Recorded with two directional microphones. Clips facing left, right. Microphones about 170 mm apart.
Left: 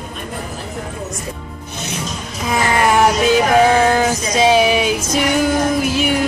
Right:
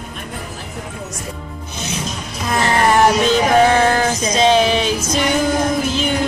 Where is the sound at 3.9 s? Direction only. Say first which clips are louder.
Left 1 dB; 10° left (ahead or behind).